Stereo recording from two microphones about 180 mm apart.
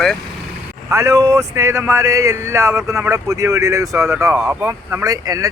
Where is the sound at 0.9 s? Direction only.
15° right (ahead or behind).